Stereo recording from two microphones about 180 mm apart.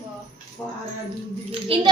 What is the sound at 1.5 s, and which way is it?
Speech, 30° right (ahead or behind).